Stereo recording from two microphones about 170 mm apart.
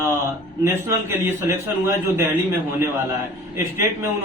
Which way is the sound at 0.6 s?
15° right (ahead or behind).